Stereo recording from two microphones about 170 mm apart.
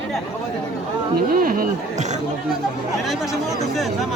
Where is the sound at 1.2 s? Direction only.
60° right (ahead or behind).